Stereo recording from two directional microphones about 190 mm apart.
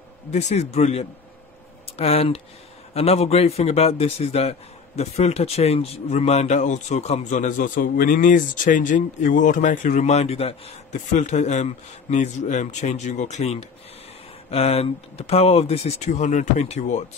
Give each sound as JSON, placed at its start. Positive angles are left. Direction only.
{"t": 0.3, "sound": "a man's voice", "side_deg": 35}